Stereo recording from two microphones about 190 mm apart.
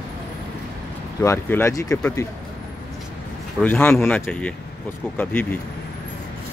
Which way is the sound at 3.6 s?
10° left (ahead or behind).